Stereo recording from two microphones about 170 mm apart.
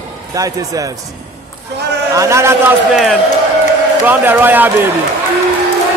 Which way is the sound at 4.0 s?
10° right (ahead or behind).